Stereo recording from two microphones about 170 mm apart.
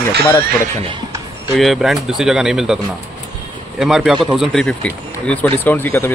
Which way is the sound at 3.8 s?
Centre (ahead or behind).